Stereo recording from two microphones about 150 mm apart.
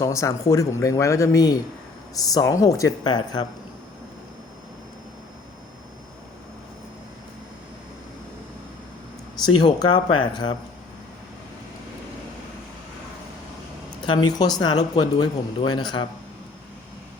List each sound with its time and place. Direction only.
0.0 s speech: 20° left (ahead or behind)
9.4 s speech: 30° left (ahead or behind)
14.1 s speech: 25° left (ahead or behind)